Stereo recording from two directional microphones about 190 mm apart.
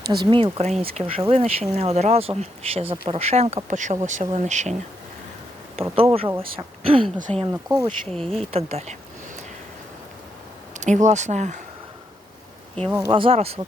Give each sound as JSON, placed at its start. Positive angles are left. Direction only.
{"t": 0.2, "sound": "speech", "side_deg": -25}
{"t": 5.9, "sound": "speech", "side_deg": -30}
{"t": 7.2, "sound": "speech", "side_deg": -40}
{"t": 7.5, "sound": "speech", "side_deg": -15}
{"t": 8.1, "sound": "speech", "side_deg": 5}
{"t": 8.5, "sound": "a sound", "side_deg": -35}
{"t": 10.8, "sound": "speech", "side_deg": -40}
{"t": 13.1, "sound": "speech", "side_deg": -30}